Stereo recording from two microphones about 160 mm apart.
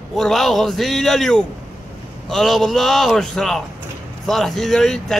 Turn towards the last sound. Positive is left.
turn(degrees=5)  # may be behind; listen again after turning